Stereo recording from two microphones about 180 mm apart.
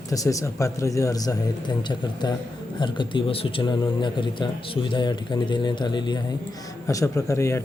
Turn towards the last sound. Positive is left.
turn(degrees=15)  # may be behind; listen again after turning